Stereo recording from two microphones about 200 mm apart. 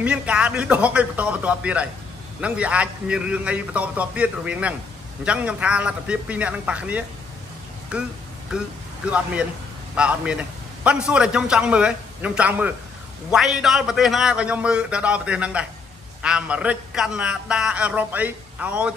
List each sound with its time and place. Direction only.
0.0 s a man's voice: 5° right (ahead or behind)
9.9 s a man's voice: 5° right (ahead or behind)